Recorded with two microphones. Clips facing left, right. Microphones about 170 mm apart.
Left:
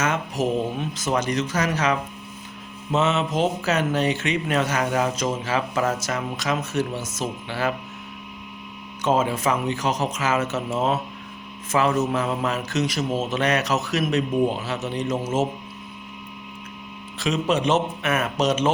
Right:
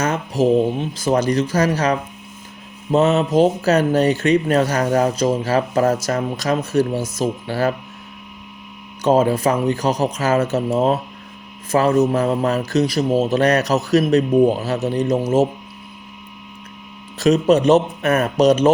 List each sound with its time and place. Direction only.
0.0 s speech: 35° right (ahead or behind)
9.0 s speech: 35° right (ahead or behind)
17.2 s speech: 40° right (ahead or behind)